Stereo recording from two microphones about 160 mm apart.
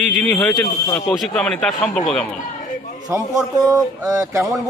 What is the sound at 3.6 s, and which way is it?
Speech, 20° right (ahead or behind).